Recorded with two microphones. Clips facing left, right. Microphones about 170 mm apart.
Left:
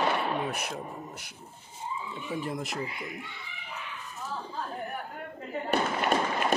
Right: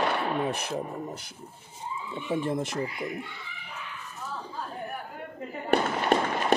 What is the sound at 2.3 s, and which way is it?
Speech, 25° right (ahead or behind).